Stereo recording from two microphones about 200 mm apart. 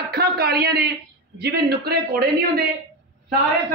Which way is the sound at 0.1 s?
50° right (ahead or behind).